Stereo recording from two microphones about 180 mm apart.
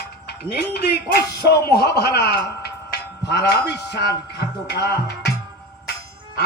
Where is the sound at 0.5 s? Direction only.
60° left (ahead or behind).